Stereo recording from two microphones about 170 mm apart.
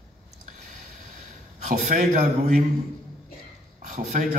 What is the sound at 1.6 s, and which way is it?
Speech, 40° right (ahead or behind).